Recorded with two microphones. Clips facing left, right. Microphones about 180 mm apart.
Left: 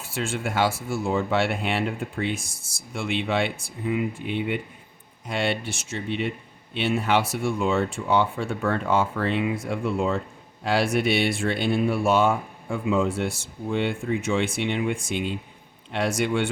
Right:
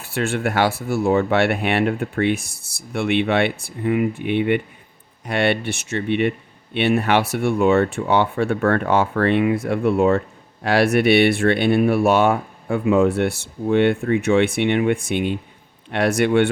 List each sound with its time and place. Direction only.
0.0 s speech: 65° right (ahead or behind)